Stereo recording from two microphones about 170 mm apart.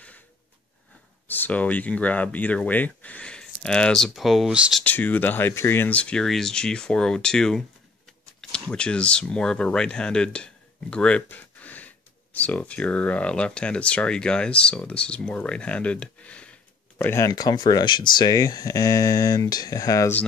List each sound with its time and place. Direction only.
1.2 s speech: 10° left (ahead or behind)
4.8 s speech: 10° left (ahead or behind)